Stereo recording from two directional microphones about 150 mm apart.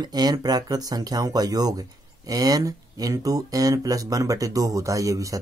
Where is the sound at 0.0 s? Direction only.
25° right (ahead or behind).